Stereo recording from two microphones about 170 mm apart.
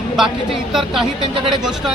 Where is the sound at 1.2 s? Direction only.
30° right (ahead or behind).